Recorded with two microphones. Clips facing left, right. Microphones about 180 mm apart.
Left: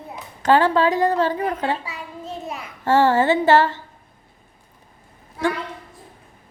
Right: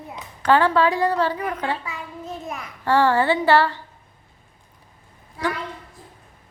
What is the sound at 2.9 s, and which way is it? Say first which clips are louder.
Speech: left 2 dB; 45° left (ahead or behind).